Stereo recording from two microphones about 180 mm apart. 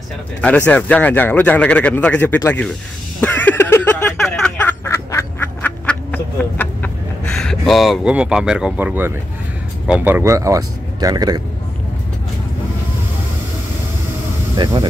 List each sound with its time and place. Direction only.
0.4 s a man's voice: 5° left (ahead or behind)
3.2 s a sound: 10° left (ahead or behind); by 9.1 s 10° right (ahead or behind)
9.8 s speech: 10° right (ahead or behind)
14.5 s speech: 25° right (ahead or behind)